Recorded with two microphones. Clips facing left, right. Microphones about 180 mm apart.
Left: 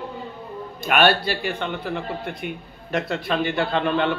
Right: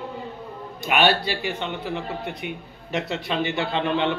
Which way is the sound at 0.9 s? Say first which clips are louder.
Left 2 dB; 50° left (ahead or behind).